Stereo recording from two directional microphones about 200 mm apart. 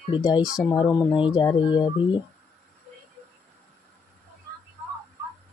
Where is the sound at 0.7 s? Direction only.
15° left (ahead or behind).